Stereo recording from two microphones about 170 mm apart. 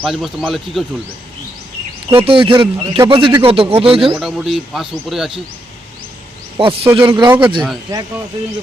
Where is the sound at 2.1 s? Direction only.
30° right (ahead or behind).